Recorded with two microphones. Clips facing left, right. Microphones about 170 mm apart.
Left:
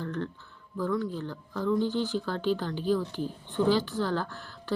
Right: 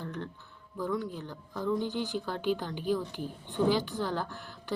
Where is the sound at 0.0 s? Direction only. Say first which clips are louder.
Left 5 dB; 15° right (ahead or behind).